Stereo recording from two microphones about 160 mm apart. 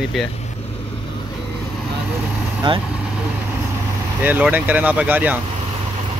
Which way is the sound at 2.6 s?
30° right (ahead or behind).